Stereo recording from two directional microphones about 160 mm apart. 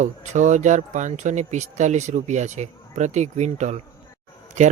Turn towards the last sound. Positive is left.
turn(degrees=-50)  # may be behind; listen again after turning